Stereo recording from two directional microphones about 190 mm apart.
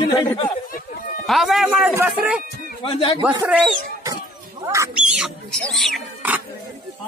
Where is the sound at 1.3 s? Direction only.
Centre (ahead or behind).